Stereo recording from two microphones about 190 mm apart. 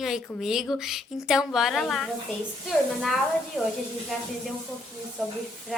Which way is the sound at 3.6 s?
Centre (ahead or behind).